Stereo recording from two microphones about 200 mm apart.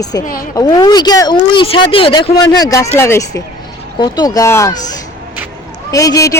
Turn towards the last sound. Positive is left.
turn(degrees=15)  # may be behind; listen again after turning